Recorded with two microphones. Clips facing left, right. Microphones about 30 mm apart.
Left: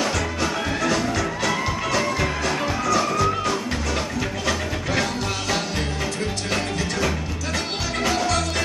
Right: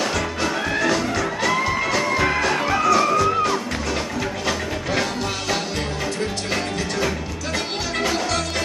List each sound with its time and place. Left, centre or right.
0.0 s music: centre
2.4 s music: centre
8.0 s music: centre